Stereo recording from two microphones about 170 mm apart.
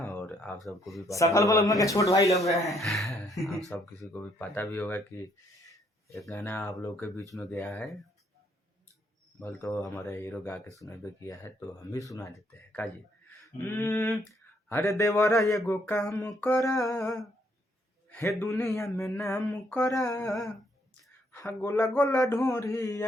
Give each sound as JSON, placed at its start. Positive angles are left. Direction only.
{"t": 0.0, "sound": "speech", "side_deg": 10}
{"t": 1.0, "sound": "a sound", "side_deg": 20}
{"t": 2.7, "sound": "speech", "side_deg": 0}
{"t": 4.0, "sound": "speech", "side_deg": 10}
{"t": 6.3, "sound": "speech", "side_deg": 10}
{"t": 7.3, "sound": "speech", "side_deg": 0}
{"t": 9.4, "sound": "speech", "side_deg": 15}
{"t": 15.2, "sound": "a sound", "side_deg": 20}
{"t": 18.1, "sound": "speech", "side_deg": 15}
{"t": 20.1, "sound": "speech", "side_deg": 5}
{"t": 20.9, "sound": "speech", "side_deg": 15}